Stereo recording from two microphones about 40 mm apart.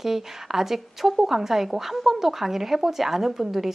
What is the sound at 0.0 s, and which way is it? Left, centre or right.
A woman's voice, centre.